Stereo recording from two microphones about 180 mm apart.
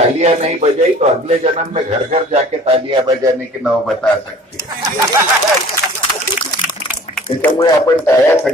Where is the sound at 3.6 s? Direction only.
Centre (ahead or behind).